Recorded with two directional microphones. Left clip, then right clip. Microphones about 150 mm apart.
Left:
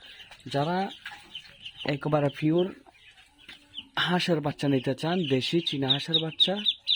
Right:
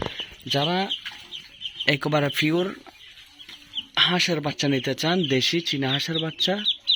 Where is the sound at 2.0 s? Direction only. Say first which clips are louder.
Right 3 dB; 10° left (ahead or behind).